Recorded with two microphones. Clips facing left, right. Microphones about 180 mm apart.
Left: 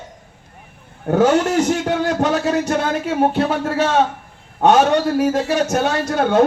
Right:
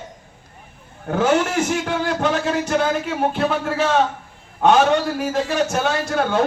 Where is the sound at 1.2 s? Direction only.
35° left (ahead or behind).